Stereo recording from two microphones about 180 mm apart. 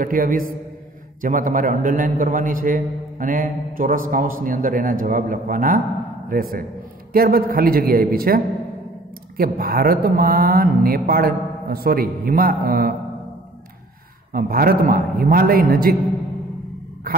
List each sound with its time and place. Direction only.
0.0 s a man's voice: 50° right (ahead or behind)
9.4 s speech: 55° right (ahead or behind)
14.3 s a man's voice: 55° right (ahead or behind)